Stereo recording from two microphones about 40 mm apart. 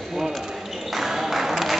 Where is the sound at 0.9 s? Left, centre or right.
Centre.